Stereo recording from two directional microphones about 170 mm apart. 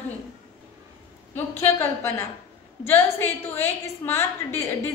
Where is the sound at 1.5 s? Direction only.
15° left (ahead or behind).